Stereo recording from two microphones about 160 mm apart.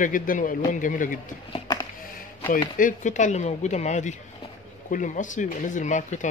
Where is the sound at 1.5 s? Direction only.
25° left (ahead or behind).